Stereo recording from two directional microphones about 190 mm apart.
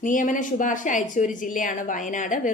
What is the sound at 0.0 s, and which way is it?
Speech, 45° left (ahead or behind).